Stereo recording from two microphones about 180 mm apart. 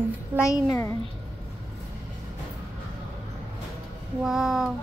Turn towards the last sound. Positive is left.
turn(degrees=0)  # may be behind; listen again after turning